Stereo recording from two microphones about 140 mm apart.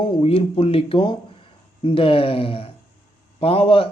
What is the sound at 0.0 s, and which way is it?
A man's voice, 35° left (ahead or behind).